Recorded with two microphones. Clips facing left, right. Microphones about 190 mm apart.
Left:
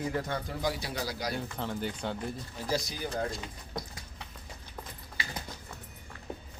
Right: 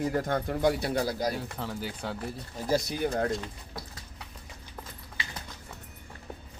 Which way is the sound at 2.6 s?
55° right (ahead or behind).